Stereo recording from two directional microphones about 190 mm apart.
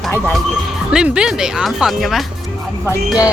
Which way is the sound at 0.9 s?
5° right (ahead or behind).